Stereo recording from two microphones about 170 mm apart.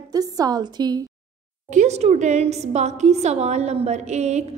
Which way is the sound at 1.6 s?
45° right (ahead or behind).